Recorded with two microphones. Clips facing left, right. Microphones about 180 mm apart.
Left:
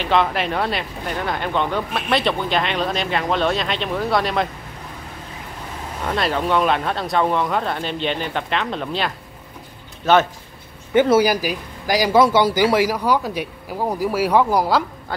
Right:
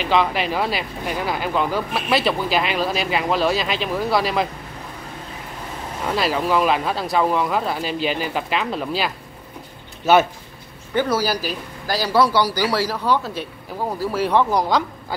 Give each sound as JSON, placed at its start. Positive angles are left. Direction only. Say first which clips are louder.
{"t": 0.0, "sound": "speech", "louder": "even", "side_deg": 0}
{"t": 6.0, "sound": "speech", "louder": "even", "side_deg": -5}
{"t": 11.0, "sound": "a man's voice", "louder": "left 6 dB", "side_deg": 20}